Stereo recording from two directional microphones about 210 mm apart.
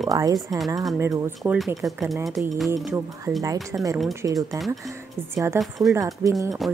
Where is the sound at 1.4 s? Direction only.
Centre (ahead or behind).